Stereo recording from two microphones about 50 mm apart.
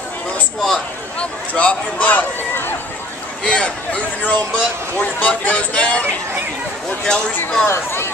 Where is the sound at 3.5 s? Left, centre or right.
Left.